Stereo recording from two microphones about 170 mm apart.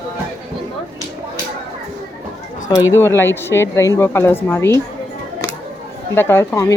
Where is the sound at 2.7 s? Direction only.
20° left (ahead or behind).